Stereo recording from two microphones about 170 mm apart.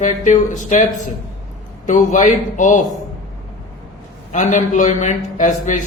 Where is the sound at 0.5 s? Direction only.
45° left (ahead or behind).